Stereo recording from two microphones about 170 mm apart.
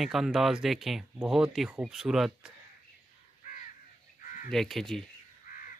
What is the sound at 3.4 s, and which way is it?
Crow, 45° left (ahead or behind).